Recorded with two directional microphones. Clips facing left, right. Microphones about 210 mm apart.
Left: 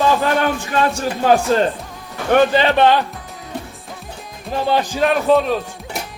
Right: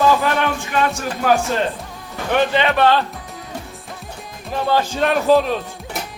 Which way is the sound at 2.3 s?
45° left (ahead or behind).